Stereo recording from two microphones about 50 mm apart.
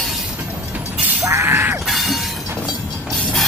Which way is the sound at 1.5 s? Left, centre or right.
Right.